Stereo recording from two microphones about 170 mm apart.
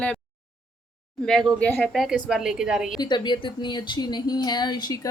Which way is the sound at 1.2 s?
5° left (ahead or behind).